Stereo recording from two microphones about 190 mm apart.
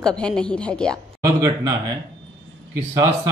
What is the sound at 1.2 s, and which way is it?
Speech, 20° right (ahead or behind).